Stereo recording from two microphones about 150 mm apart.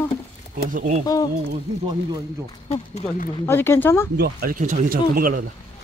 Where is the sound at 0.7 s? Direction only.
55° right (ahead or behind).